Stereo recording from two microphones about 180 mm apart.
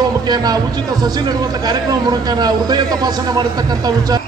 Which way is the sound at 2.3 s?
20° right (ahead or behind).